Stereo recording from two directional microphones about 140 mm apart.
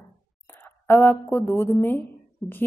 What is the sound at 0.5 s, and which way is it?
A woman's voice, 15° left (ahead or behind).